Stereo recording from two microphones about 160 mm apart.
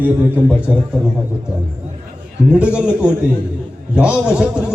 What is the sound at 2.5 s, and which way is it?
A man's voice, 5° right (ahead or behind).